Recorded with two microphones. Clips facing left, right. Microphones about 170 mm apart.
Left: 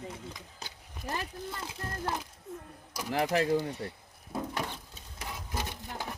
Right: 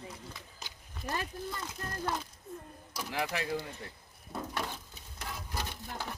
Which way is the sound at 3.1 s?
40° left (ahead or behind).